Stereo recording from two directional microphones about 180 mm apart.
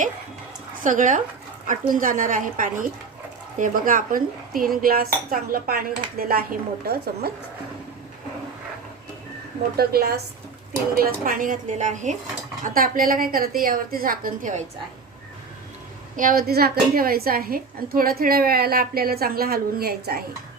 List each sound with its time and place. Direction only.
0.7 s a woman's voice: 45° right (ahead or behind)
9.7 s a woman's voice: 60° right (ahead or behind)
16.1 s a woman's voice: 50° right (ahead or behind)